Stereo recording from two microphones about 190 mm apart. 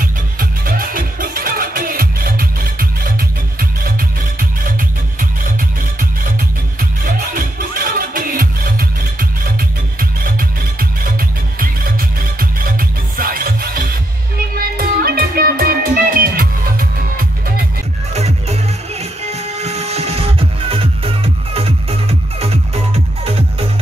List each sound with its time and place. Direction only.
0.0 s music: 50° right (ahead or behind)
7.3 s music: 45° right (ahead or behind)
18.1 s music: 35° right (ahead or behind)